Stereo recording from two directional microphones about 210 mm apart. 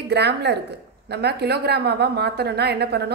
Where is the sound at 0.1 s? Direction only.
50° right (ahead or behind).